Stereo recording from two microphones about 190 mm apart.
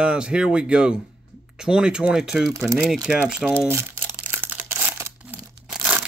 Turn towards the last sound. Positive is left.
turn(degrees=-5)  # may be behind; listen again after turning